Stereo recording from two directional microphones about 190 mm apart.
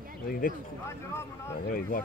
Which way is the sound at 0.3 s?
45° left (ahead or behind).